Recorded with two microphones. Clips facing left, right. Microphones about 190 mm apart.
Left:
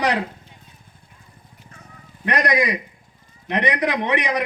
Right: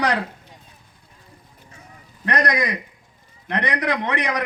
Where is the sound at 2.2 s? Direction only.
10° left (ahead or behind).